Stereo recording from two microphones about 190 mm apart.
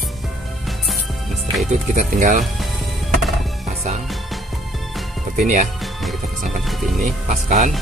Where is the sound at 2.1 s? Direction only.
45° right (ahead or behind).